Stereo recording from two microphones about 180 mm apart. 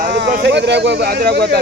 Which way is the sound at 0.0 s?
60° right (ahead or behind).